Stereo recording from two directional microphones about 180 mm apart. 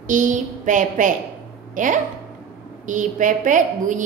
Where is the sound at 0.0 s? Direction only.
45° right (ahead or behind).